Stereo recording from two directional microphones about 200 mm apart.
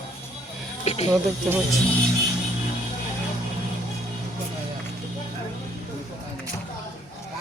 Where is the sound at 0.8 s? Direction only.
30° left (ahead or behind).